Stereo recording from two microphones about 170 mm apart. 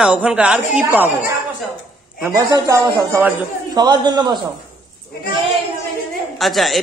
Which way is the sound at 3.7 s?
25° right (ahead or behind).